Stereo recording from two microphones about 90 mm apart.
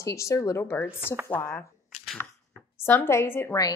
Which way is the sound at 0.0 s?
35° left (ahead or behind).